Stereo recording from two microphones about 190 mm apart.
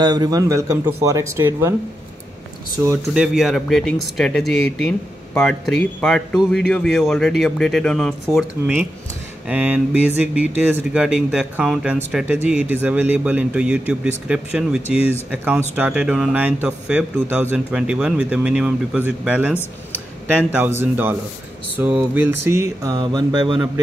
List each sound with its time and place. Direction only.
0.0 s speech: 20° right (ahead or behind)
3.2 s speech: centre (ahead or behind)
20.8 s speech: 10° right (ahead or behind); by 23.6 s 25° right (ahead or behind)